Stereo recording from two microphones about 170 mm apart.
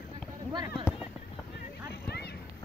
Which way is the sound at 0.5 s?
25° right (ahead or behind).